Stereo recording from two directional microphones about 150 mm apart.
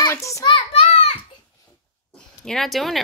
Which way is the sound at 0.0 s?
20° left (ahead or behind).